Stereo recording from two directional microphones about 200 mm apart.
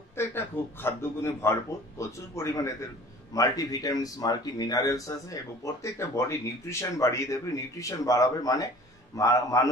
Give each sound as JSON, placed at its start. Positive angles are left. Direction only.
{"t": 0.2, "sound": "speech", "side_deg": 10}